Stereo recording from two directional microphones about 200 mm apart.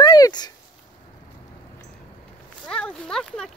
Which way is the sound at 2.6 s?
5° left (ahead or behind).